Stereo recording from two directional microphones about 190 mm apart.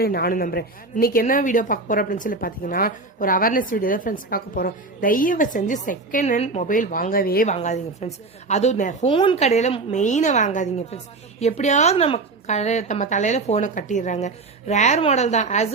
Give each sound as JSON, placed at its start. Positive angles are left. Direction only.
{"t": 0.0, "sound": "a woman's voice", "side_deg": 55}